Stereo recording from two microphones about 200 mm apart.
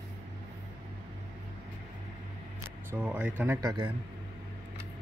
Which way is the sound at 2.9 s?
10° right (ahead or behind).